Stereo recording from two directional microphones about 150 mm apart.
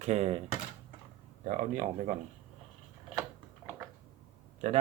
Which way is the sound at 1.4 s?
55° right (ahead or behind).